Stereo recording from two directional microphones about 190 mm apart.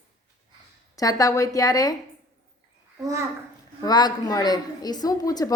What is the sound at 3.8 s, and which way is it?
A woman's voice, 20° left (ahead or behind).